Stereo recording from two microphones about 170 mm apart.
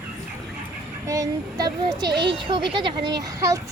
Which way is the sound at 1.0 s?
20° right (ahead or behind).